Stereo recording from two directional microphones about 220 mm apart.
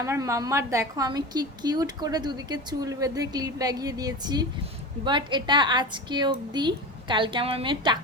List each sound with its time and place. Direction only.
0.0 s a woman's voice: 15° right (ahead or behind)